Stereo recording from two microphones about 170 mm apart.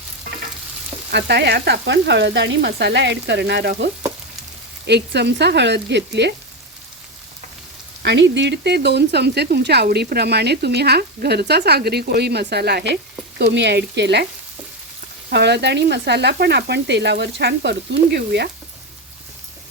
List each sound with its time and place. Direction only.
1.1 s speech: 80° right
4.9 s speech: 80° right
8.0 s speech: 90° right
13.4 s speech: 90° right
15.3 s speech: 80° right